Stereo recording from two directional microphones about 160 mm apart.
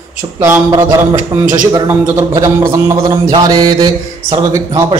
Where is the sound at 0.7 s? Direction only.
25° right (ahead or behind).